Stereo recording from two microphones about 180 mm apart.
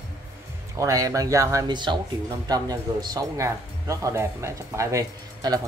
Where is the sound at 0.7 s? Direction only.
20° right (ahead or behind).